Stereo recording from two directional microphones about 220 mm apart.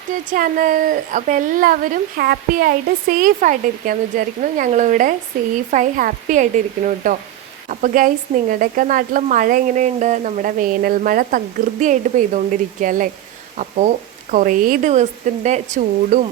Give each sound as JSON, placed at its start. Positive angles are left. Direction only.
{"t": 0.3, "sound": "speech", "side_deg": -40}